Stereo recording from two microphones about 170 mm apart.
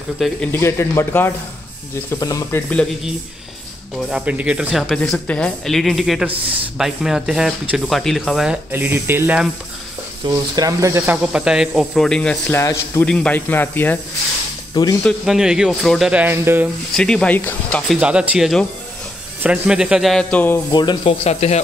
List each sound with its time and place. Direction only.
0.2 s speech: 10° left (ahead or behind)
4.1 s speech: 5° right (ahead or behind)
10.2 s speech: 20° right (ahead or behind); by 13.9 s 10° left (ahead or behind)
14.7 s speech: 25° left (ahead or behind)
15.0 s speech: centre (ahead or behind)
16.9 s speech: 5° left (ahead or behind)
17.9 s speech: 5° right (ahead or behind); by 20.6 s 10° left (ahead or behind)
20.7 s speech: 25° left (ahead or behind)